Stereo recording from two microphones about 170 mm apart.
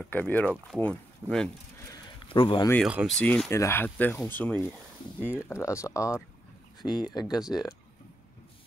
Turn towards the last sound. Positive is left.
turn(degrees=-5)  # may be behind; listen again after turning